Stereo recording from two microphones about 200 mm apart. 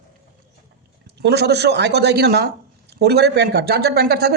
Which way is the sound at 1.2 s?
55° right (ahead or behind).